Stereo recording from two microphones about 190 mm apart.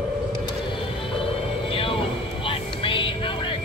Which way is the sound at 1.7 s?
30° left (ahead or behind).